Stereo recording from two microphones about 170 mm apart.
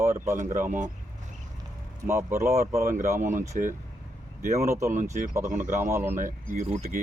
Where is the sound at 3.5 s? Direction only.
50° right (ahead or behind).